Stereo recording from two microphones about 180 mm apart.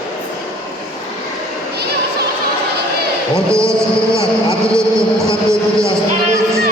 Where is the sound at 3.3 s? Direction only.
15° right (ahead or behind).